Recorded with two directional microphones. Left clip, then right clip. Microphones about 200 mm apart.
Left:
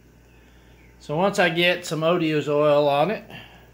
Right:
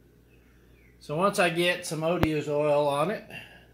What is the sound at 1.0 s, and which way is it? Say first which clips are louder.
Speech: left 4 dB; centre (ahead or behind).